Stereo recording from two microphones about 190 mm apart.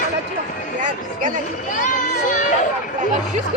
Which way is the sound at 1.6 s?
45° left (ahead or behind).